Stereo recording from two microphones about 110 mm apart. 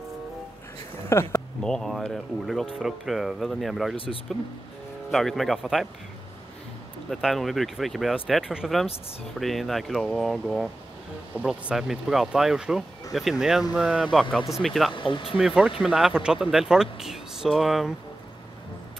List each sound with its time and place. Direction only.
1.1 s speech: 25° left (ahead or behind)
1.6 s speech: 5° left (ahead or behind)
3.9 s speech: 55° left (ahead or behind)
5.1 s speech: centre (ahead or behind)
7.1 s speech: centre (ahead or behind)
15.0 s speech: 45° left (ahead or behind)
15.3 s speech: 5° right (ahead or behind)